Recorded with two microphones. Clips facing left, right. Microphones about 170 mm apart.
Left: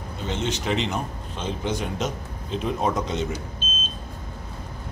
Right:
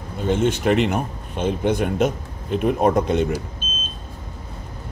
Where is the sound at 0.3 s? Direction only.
55° right (ahead or behind).